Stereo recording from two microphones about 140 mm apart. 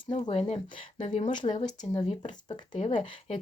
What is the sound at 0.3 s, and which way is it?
Speech, 45° left (ahead or behind).